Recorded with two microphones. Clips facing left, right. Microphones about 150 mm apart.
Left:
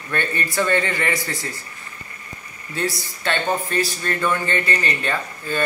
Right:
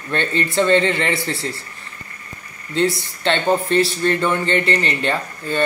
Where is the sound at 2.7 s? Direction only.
25° right (ahead or behind).